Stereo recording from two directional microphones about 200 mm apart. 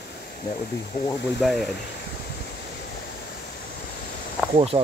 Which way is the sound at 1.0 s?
45° left (ahead or behind).